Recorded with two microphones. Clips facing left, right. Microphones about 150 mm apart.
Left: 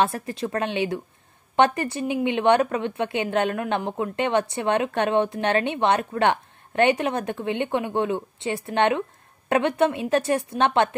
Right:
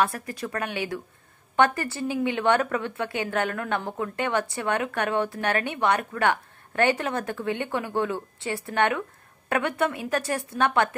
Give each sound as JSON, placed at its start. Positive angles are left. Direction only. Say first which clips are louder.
{"t": 0.0, "sound": "a woman's voice", "louder": "left 3 dB", "side_deg": 25}